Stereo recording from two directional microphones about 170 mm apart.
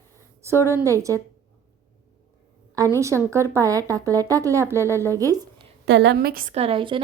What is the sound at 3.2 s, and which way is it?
A woman's voice, 15° right (ahead or behind).